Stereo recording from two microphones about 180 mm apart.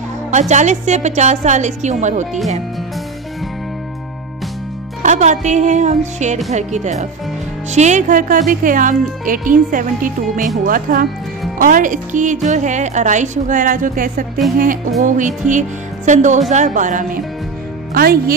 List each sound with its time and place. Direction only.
0.3 s a woman's voice: 40° right (ahead or behind)
5.0 s a woman's voice: 40° right (ahead or behind)
17.9 s speech: 55° right (ahead or behind)